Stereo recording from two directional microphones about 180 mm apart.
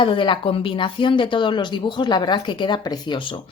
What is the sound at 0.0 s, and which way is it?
A woman's voice, 25° left (ahead or behind).